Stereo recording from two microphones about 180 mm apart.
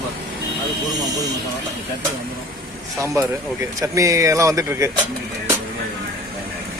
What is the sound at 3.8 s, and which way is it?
Speech, 20° right (ahead or behind).